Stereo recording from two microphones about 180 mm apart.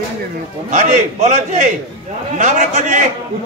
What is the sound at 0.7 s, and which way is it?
A man's voice, 40° right (ahead or behind).